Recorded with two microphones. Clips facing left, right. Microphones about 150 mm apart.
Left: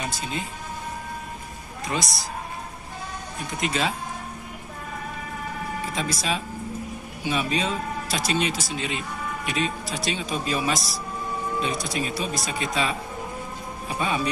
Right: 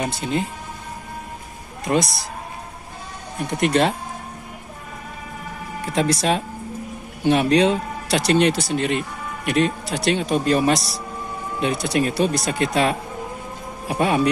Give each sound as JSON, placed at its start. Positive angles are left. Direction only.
{"t": 0.0, "sound": "speech", "side_deg": -60}
{"t": 1.9, "sound": "a man's voice", "side_deg": -45}
{"t": 3.4, "sound": "speech", "side_deg": -60}
{"t": 5.9, "sound": "speech", "side_deg": -65}